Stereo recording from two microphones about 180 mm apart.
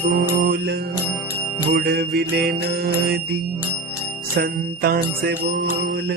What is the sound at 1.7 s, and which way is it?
Music, 65° right (ahead or behind).